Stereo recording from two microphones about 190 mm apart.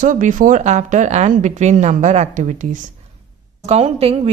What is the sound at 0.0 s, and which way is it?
Speech, 45° right (ahead or behind).